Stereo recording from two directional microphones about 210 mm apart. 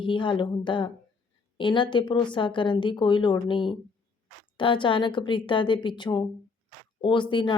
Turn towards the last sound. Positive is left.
turn(degrees=25)  # may be behind; listen again after turning